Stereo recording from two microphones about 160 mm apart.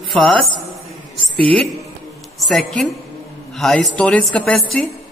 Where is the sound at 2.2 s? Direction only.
Centre (ahead or behind).